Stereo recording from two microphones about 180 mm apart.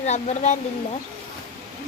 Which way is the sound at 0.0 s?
40° left (ahead or behind).